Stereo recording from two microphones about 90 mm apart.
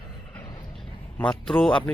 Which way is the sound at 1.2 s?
10° left (ahead or behind).